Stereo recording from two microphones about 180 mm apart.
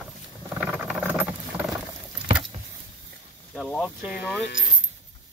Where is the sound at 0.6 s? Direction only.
5° right (ahead or behind).